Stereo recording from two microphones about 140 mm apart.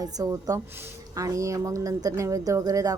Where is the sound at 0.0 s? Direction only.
25° right (ahead or behind).